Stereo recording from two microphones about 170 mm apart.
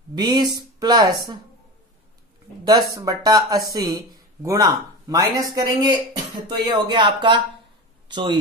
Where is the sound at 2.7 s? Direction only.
20° right (ahead or behind).